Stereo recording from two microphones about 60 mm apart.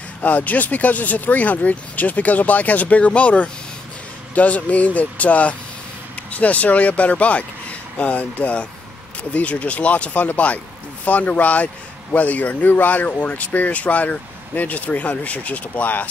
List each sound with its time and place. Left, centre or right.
0.2 s speech: left